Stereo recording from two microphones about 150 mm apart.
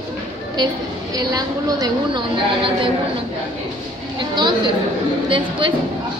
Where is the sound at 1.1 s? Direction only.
25° right (ahead or behind).